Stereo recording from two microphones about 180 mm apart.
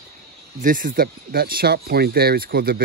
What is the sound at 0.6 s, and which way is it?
Speech, 50° right (ahead or behind).